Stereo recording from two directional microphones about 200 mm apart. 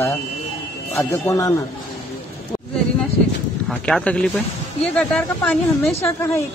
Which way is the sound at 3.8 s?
5° left (ahead or behind).